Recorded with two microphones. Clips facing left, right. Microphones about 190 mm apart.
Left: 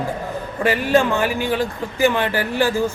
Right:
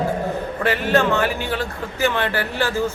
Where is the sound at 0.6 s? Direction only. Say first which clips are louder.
Left 2 dB; 15° left (ahead or behind).